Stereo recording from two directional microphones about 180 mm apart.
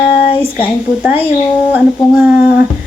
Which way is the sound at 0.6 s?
10° right (ahead or behind).